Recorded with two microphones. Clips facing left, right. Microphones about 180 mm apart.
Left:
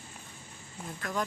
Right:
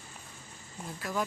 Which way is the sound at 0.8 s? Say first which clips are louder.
Even; 5° right (ahead or behind).